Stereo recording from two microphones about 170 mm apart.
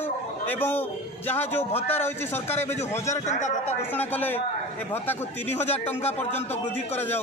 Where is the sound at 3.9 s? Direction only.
10° left (ahead or behind).